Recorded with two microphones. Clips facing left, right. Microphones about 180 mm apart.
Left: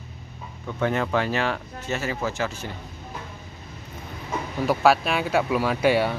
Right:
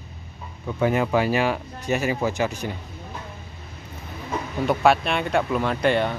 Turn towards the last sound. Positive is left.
turn(degrees=5)  # may be behind; listen again after turning